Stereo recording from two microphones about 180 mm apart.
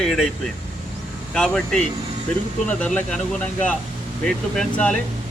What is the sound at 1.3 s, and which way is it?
A man's voice, 5° left (ahead or behind).